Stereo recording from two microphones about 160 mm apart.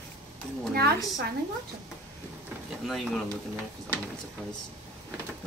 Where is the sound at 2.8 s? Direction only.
Centre (ahead or behind).